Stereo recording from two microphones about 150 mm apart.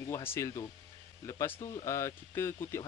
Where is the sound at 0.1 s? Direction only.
15° left (ahead or behind).